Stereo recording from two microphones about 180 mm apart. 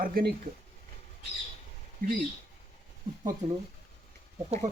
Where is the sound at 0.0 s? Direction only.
55° right (ahead or behind).